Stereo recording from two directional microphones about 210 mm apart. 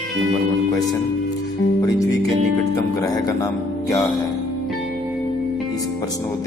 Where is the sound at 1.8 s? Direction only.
15° left (ahead or behind).